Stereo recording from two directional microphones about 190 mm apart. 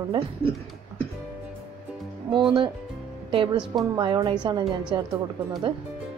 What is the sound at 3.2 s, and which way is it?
A woman's voice, 25° right (ahead or behind).